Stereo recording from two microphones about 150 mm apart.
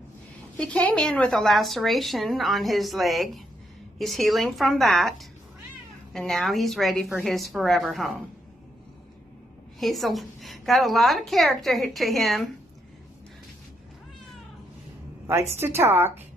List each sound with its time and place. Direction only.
0.6 s a woman's voice: 10° left (ahead or behind)
6.1 s a woman's voice: centre (ahead or behind)
9.8 s a woman's voice: centre (ahead or behind)
15.2 s a woman's voice: 15° right (ahead or behind)